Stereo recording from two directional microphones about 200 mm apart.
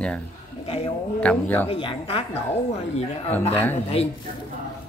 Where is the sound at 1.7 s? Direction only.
25° left (ahead or behind).